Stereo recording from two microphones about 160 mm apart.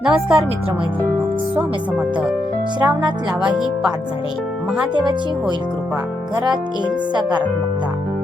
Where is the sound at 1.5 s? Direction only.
10° right (ahead or behind).